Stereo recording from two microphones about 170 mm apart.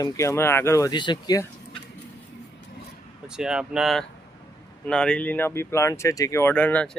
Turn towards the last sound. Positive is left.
turn(degrees=10)  # may be behind; listen again after turning